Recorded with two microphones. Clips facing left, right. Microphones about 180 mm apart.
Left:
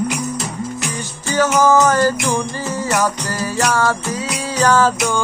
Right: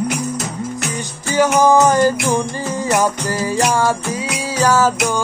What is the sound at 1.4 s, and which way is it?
Music, 15° right (ahead or behind).